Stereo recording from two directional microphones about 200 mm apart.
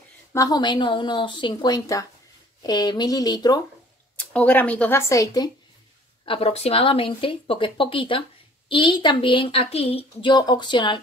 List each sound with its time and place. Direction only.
0.3 s a woman's voice: 15° left (ahead or behind)
4.2 s speech: 10° left (ahead or behind)
6.2 s a woman's voice: 30° left (ahead or behind)